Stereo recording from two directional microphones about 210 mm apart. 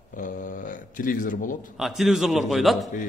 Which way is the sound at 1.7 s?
Centre (ahead or behind).